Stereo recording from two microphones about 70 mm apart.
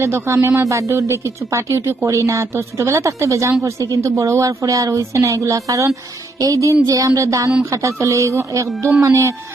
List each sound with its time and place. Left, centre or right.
0.0 s a woman's voice: right
3.6 s a woman's voice: right
6.4 s music: right
7.2 s a woman's voice: right